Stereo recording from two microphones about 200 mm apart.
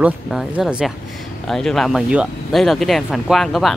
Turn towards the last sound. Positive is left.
turn(degrees=0)  # may be behind; listen again after turning